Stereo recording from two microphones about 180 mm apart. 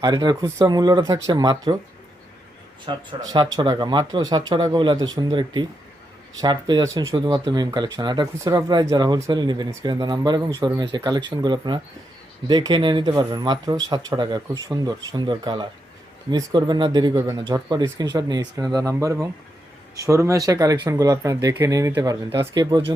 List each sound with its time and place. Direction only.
0.0 s speech: 25° right (ahead or behind)
3.3 s speech: 25° right (ahead or behind)